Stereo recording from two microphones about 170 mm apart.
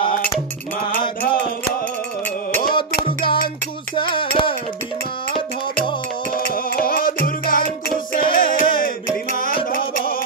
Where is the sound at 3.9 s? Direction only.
30° left (ahead or behind).